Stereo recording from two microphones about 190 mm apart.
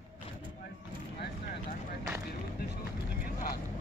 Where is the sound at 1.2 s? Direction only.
45° left (ahead or behind).